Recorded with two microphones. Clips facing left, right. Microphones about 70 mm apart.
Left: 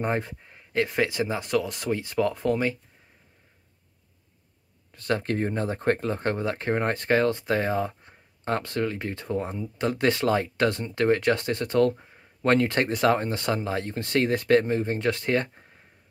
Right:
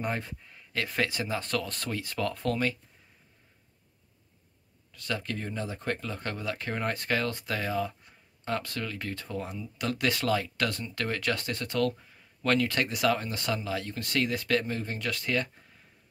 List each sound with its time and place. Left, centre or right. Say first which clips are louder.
0.0 s speech: left 6 dB; left
4.9 s speech: left 8 dB; left